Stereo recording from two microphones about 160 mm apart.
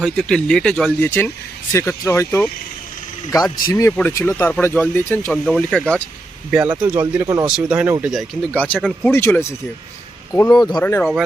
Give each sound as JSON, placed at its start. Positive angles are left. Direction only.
{"t": 0.0, "sound": "speech", "side_deg": 5}
{"t": 3.9, "sound": "speech", "side_deg": 10}
{"t": 5.3, "sound": "speech", "side_deg": 5}
{"t": 6.5, "sound": "speech", "side_deg": -5}
{"t": 7.4, "sound": "speech", "side_deg": -5}